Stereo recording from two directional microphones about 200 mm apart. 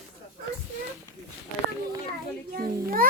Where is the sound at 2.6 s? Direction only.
45° right (ahead or behind).